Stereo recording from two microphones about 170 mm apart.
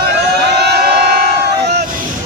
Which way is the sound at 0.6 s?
75° right (ahead or behind).